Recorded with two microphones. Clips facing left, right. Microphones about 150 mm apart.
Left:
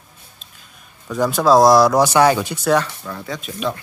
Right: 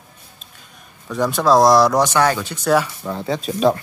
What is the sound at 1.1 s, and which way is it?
Speech, centre (ahead or behind).